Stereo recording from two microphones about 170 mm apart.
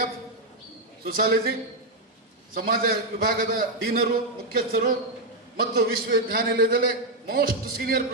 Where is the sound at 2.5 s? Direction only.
60° right (ahead or behind).